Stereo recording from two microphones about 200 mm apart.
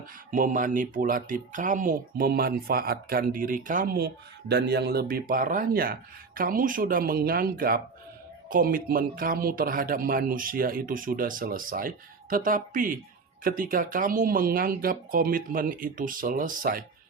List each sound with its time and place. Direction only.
0.3 s speech: 40° right (ahead or behind)